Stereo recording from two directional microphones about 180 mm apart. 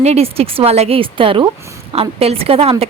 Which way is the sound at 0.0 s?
35° right (ahead or behind).